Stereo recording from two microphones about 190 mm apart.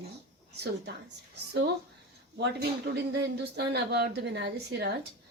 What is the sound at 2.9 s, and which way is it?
A woman's voice, 55° right (ahead or behind).